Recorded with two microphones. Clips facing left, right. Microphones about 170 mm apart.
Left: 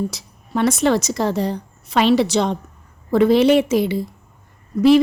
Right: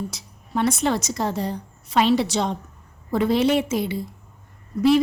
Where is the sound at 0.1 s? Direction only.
85° left.